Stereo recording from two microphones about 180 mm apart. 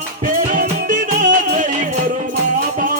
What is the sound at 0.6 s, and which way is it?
Music, 45° right (ahead or behind).